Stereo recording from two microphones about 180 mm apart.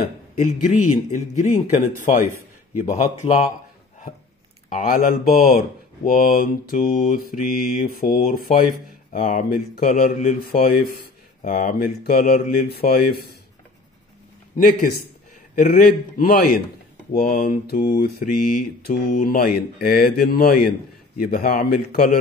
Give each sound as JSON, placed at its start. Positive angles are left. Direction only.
{"t": 1.1, "sound": "speech", "side_deg": 45}
{"t": 4.6, "sound": "speech", "side_deg": 50}
{"t": 14.6, "sound": "speech", "side_deg": 50}